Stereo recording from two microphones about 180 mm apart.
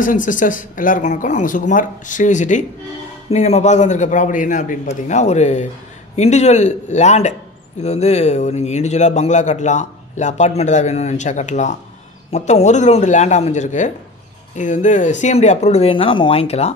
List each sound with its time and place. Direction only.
0.0 s speech: 45° left (ahead or behind)